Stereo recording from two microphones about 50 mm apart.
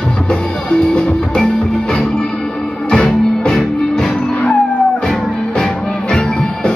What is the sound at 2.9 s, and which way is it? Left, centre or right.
Music, centre.